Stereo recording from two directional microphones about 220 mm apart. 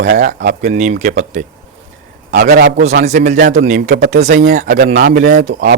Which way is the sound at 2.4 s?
50° right (ahead or behind).